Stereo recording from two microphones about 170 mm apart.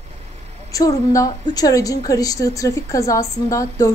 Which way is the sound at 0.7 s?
20° left (ahead or behind).